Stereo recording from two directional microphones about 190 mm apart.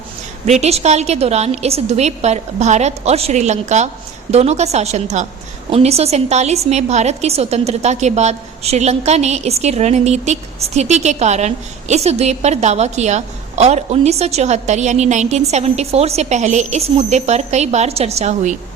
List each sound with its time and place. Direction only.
0.4 s a woman's voice: 35° right (ahead or behind)